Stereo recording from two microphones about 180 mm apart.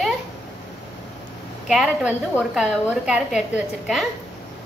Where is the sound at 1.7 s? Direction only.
5° right (ahead or behind).